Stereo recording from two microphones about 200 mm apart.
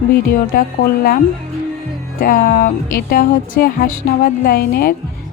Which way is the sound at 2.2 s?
45° left (ahead or behind).